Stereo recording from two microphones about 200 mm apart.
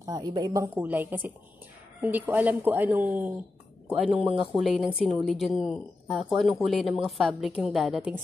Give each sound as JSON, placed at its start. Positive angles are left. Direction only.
{"t": 0.0, "sound": "speech", "side_deg": -20}